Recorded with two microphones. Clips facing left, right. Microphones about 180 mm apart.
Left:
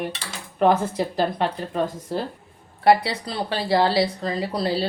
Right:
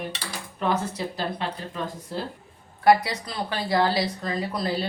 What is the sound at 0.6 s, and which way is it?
Speech, 55° left (ahead or behind).